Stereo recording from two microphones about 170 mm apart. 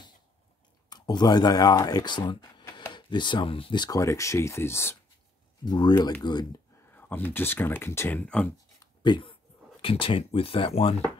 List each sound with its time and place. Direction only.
0.8 s speech: 25° left (ahead or behind)
5.7 s speech: 25° left (ahead or behind)
6.9 s speech: 10° left (ahead or behind)
8.7 s speech: 25° left (ahead or behind)